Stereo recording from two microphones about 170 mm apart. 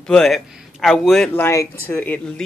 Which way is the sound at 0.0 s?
5° left (ahead or behind).